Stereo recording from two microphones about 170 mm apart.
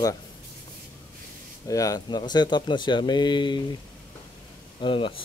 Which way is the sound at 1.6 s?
20° left (ahead or behind).